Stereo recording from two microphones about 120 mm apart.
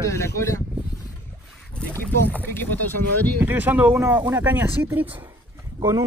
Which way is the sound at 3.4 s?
15° right (ahead or behind).